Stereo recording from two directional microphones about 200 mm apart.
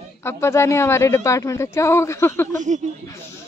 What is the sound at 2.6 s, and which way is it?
Speech, 35° right (ahead or behind).